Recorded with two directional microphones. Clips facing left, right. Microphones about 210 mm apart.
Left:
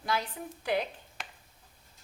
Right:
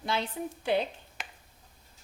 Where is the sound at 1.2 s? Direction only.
5° right (ahead or behind).